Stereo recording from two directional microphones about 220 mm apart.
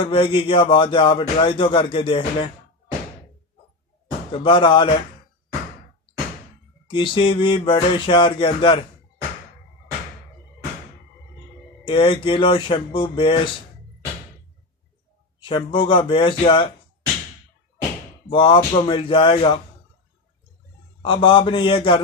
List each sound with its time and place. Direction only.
0.0 s music: 25° left (ahead or behind)
4.3 s music: 20° left (ahead or behind)
6.9 s music: 20° left (ahead or behind)
11.8 s music: 20° left (ahead or behind)
15.4 s music: 25° left (ahead or behind)
18.3 s music: 25° left (ahead or behind)
21.0 s music: 25° left (ahead or behind)